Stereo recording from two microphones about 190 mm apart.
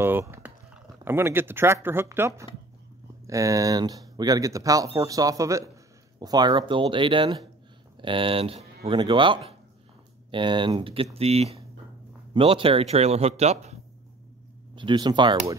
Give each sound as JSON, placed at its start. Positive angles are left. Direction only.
{"t": 0.0, "sound": "a sound", "side_deg": -15}
{"t": 1.0, "sound": "speech", "side_deg": -10}
{"t": 14.8, "sound": "speech", "side_deg": -25}